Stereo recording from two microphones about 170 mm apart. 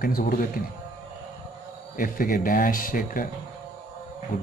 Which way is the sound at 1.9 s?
55° left (ahead or behind).